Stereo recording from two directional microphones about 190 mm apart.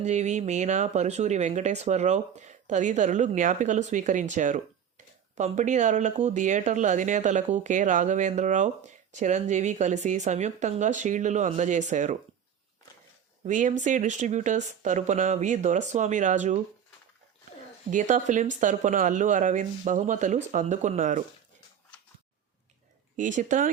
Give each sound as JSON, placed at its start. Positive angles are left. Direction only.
{"t": 0.0, "sound": "speech", "side_deg": -40}
{"t": 13.4, "sound": "speech", "side_deg": -40}
{"t": 17.9, "sound": "speech", "side_deg": -40}
{"t": 23.1, "sound": "speech", "side_deg": -40}